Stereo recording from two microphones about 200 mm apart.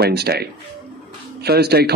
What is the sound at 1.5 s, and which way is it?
Speech, 55° right (ahead or behind).